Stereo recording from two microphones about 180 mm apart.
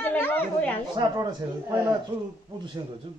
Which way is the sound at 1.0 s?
25° right (ahead or behind).